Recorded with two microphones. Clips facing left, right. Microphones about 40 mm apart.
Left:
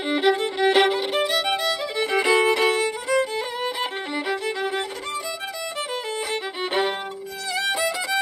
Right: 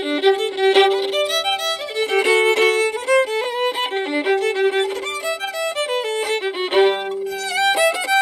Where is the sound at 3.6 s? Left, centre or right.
Centre.